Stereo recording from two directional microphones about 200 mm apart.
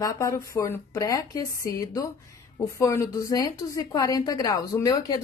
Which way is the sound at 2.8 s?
15° left (ahead or behind).